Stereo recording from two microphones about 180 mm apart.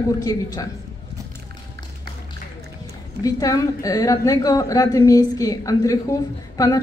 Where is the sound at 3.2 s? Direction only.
20° left (ahead or behind).